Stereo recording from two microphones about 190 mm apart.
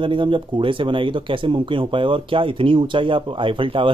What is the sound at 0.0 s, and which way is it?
Speech, 25° right (ahead or behind).